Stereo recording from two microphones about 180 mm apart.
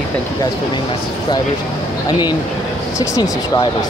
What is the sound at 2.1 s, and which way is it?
Speech, 25° left (ahead or behind).